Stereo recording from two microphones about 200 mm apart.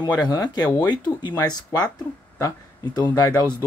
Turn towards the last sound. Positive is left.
turn(degrees=20)  # may be behind; listen again after turning